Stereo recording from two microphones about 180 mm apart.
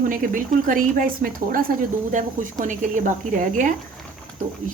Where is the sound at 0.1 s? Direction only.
50° right (ahead or behind).